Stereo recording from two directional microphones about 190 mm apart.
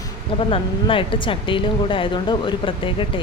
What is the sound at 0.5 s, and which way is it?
Speech, 30° left (ahead or behind).